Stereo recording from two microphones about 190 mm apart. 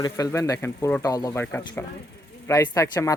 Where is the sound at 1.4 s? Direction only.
10° left (ahead or behind).